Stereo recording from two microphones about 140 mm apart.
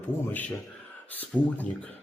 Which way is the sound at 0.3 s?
15° left (ahead or behind).